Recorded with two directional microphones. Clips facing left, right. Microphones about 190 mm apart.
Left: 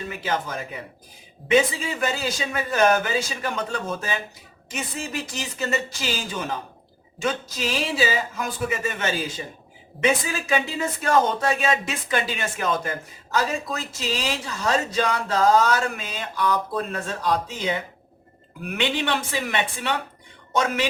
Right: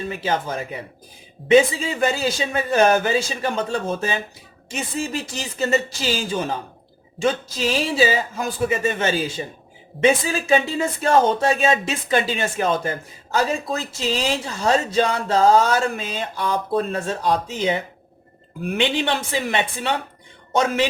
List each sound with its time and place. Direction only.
0.1 s speech: 30° right (ahead or behind)